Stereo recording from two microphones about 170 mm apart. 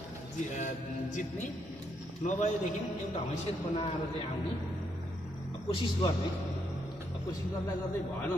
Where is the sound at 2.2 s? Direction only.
45° left (ahead or behind).